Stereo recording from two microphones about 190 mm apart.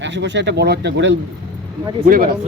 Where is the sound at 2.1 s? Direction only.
50° right (ahead or behind).